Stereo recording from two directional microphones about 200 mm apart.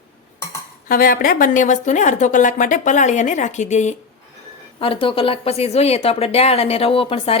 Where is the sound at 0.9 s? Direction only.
45° left (ahead or behind).